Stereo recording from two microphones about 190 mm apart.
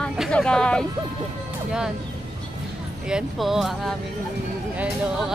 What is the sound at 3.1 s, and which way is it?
Speech, 5° right (ahead or behind).